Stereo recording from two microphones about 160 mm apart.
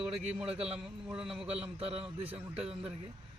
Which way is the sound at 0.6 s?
40° right (ahead or behind).